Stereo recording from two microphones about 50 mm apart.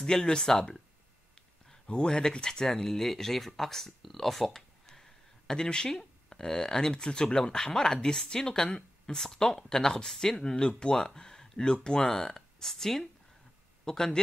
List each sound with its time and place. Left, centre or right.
0.0 s speech: centre
1.9 s speech: centre